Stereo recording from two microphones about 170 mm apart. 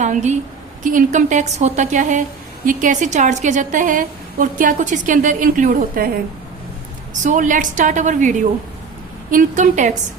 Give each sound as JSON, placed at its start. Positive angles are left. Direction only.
{"t": 0.0, "sound": "a woman's voice", "side_deg": -45}
{"t": 7.1, "sound": "a woman's voice", "side_deg": -50}